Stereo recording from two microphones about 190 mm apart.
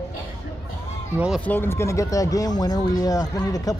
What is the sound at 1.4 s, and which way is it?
Speech, 10° left (ahead or behind).